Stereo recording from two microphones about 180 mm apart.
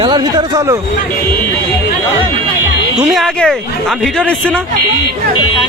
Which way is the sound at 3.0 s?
Centre (ahead or behind).